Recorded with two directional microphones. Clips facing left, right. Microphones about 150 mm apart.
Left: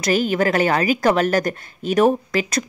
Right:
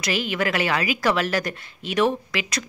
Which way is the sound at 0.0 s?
45° left (ahead or behind).